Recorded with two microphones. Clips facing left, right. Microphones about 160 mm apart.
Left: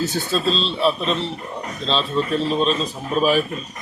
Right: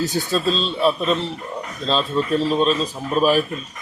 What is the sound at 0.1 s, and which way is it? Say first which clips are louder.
A man's voice: right 1 dB; centre (ahead or behind).